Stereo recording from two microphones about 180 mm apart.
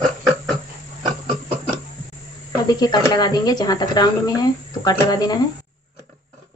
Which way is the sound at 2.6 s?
20° left (ahead or behind).